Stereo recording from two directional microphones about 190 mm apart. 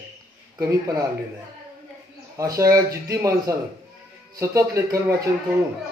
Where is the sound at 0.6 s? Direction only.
15° right (ahead or behind).